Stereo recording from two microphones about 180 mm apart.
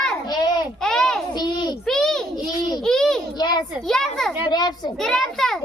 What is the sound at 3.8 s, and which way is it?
Speech, 5° left (ahead or behind).